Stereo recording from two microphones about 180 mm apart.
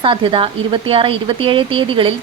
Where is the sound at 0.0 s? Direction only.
30° right (ahead or behind).